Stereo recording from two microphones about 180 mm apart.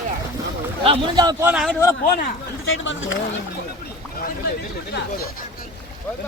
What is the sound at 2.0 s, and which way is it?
Speech, 75° left (ahead or behind).